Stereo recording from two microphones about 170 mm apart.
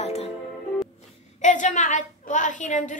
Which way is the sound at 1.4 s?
45° left (ahead or behind).